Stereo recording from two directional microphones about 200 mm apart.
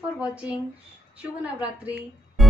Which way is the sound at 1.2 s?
5° right (ahead or behind).